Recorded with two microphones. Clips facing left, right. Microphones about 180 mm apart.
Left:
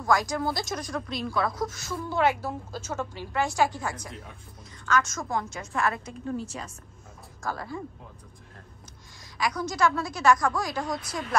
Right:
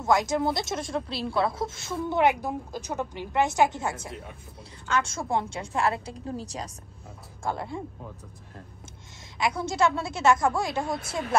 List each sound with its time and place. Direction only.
0.0 s a woman's voice: 25° right (ahead or behind)
7.4 s a woman's voice: 25° right (ahead or behind)
9.4 s a woman's voice: 25° right (ahead or behind)